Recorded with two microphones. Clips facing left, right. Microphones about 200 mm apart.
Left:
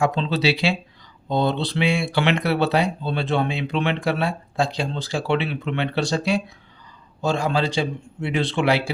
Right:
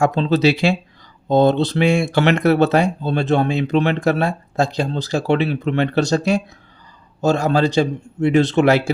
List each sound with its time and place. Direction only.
0.0 s speech: 45° right (ahead or behind)